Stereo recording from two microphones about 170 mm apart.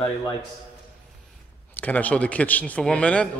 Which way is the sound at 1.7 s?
10° left (ahead or behind).